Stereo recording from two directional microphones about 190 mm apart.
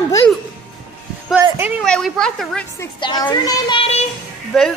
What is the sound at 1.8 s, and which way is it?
A child's voice, 5° left (ahead or behind).